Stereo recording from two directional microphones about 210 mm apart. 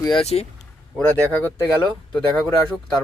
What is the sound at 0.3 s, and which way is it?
Speech, 25° left (ahead or behind).